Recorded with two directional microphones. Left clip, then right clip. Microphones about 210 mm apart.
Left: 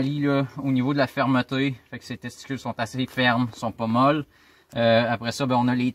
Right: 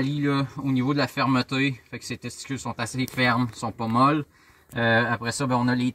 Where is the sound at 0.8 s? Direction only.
20° left (ahead or behind).